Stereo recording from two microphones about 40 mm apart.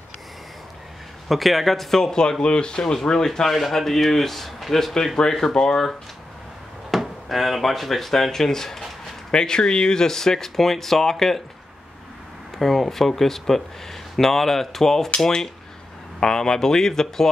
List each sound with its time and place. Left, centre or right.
1.3 s speech: centre; by 2.8 s left
2.8 s speech: centre
6.9 s speech: centre
12.5 s speech: centre
16.2 s speech: centre